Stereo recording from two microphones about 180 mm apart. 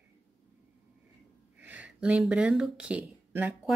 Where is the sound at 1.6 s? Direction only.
10° right (ahead or behind).